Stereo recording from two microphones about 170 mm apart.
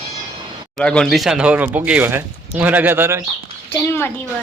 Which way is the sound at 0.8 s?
5° left (ahead or behind).